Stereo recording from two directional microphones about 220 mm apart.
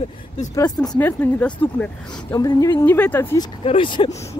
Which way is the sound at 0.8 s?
10° left (ahead or behind).